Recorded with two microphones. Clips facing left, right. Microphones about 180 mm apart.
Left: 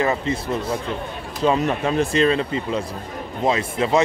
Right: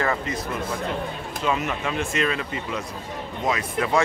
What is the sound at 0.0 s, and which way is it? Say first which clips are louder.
A man's voice: left 4 dB; 25° left (ahead or behind).